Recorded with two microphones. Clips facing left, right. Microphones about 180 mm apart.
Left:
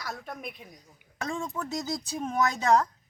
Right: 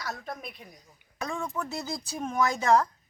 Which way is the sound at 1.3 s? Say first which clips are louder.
Left 1 dB; 25° left (ahead or behind).